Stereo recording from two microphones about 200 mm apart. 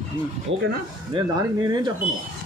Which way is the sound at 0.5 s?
75° right (ahead or behind).